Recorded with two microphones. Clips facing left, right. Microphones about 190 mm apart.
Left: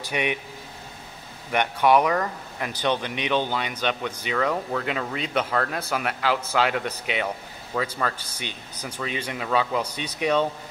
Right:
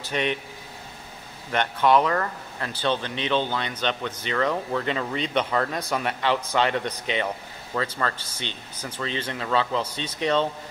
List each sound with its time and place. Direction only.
0.0 s speech: 10° left (ahead or behind)
1.5 s speech: 10° left (ahead or behind)